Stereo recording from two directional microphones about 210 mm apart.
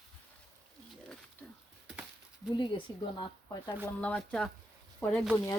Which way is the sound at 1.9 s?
5° right (ahead or behind).